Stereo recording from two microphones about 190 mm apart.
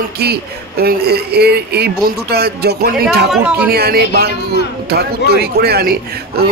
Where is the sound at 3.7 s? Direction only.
55° right (ahead or behind).